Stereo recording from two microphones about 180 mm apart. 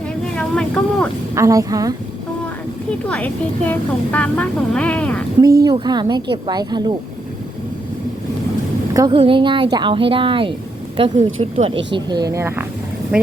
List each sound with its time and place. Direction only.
0.3 s speech: 5° left (ahead or behind)
1.4 s a woman's voice: 20° right (ahead or behind)
3.1 s speech: 5° left (ahead or behind)
5.6 s a woman's voice: 25° right (ahead or behind)
8.9 s a woman's voice: 20° right (ahead or behind)
9.1 s a woman's voice: 30° right (ahead or behind); by 12.6 s 15° right (ahead or behind)